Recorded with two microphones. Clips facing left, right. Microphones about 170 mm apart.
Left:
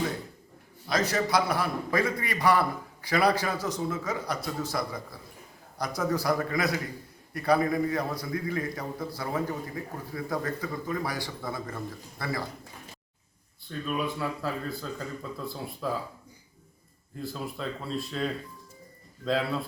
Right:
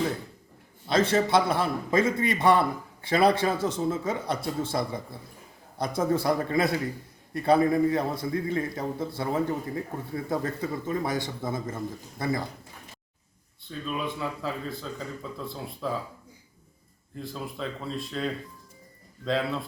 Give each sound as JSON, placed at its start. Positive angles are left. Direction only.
{"t": 0.9, "sound": "a man's voice", "side_deg": -25}
{"t": 13.7, "sound": "speech", "side_deg": 0}
{"t": 17.2, "sound": "speech", "side_deg": 0}